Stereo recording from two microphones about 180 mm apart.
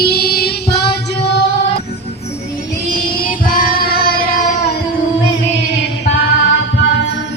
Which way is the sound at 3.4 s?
50° left (ahead or behind).